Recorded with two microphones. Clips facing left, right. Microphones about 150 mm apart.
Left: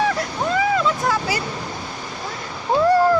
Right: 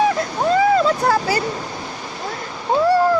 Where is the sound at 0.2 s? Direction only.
35° right (ahead or behind).